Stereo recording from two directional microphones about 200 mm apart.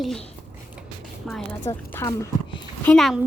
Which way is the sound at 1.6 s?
15° left (ahead or behind).